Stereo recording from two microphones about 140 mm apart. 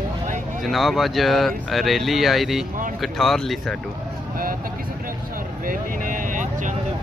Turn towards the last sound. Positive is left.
turn(degrees=-70)  # may be behind; listen again after turning